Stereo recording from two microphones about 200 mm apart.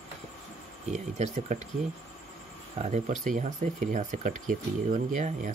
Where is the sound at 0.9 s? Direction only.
35° right (ahead or behind).